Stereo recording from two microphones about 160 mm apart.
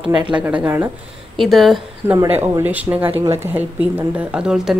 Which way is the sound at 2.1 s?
15° right (ahead or behind).